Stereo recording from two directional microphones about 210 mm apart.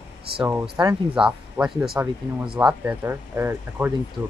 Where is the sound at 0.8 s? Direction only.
20° right (ahead or behind).